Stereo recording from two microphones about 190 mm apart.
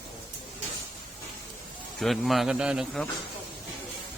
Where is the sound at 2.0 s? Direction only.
Centre (ahead or behind).